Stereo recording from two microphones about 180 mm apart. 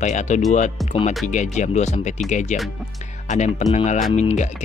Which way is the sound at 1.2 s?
45° left (ahead or behind).